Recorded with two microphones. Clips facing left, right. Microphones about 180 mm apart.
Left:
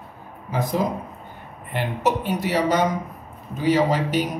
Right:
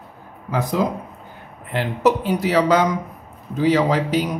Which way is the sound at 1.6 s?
90° right.